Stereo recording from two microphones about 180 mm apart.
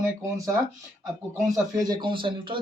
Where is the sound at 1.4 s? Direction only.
20° right (ahead or behind).